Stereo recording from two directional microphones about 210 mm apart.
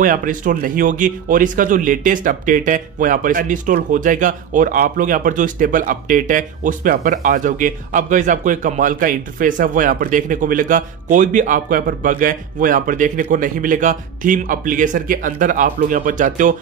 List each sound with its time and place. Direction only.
0.0 s speech: 40° right (ahead or behind)